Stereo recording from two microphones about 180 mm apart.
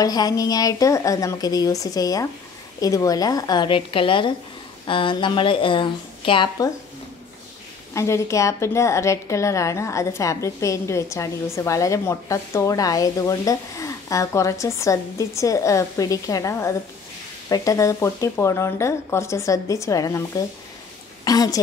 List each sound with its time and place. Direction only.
0.0 s a woman's voice: 20° left (ahead or behind)
7.9 s a woman's voice: 15° left (ahead or behind)